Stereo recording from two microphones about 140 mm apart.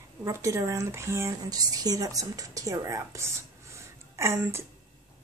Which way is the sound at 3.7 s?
20° right (ahead or behind).